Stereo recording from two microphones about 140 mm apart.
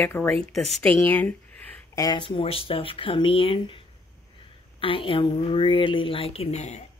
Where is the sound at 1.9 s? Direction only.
25° left (ahead or behind).